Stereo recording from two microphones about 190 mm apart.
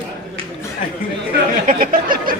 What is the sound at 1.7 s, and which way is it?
Speech, 45° right (ahead or behind).